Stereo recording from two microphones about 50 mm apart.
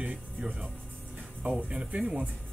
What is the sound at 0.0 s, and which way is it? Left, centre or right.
Speech, right.